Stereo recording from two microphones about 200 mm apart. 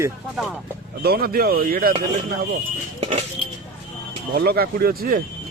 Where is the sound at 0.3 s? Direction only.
Centre (ahead or behind).